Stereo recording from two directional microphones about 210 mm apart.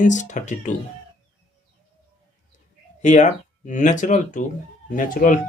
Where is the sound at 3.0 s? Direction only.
35° left (ahead or behind).